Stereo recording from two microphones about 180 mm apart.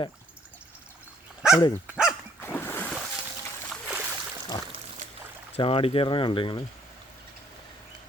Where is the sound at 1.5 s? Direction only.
20° left (ahead or behind).